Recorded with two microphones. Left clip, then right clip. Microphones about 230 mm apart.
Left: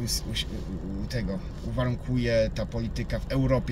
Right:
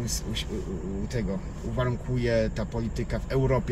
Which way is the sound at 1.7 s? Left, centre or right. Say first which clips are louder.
Even; centre.